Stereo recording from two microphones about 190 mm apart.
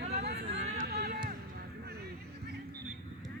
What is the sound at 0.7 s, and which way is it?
Run, 50° right (ahead or behind).